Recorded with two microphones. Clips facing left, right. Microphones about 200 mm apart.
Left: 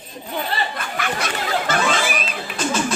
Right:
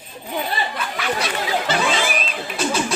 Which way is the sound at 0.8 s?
50° left (ahead or behind).